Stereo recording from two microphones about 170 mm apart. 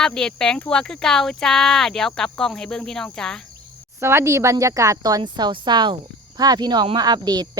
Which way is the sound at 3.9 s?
15° right (ahead or behind).